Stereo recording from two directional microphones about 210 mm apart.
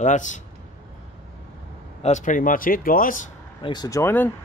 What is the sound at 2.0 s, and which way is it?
Speech, 35° left (ahead or behind).